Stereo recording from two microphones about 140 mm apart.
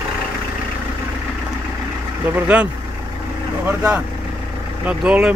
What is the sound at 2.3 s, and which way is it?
Speech, 10° right (ahead or behind).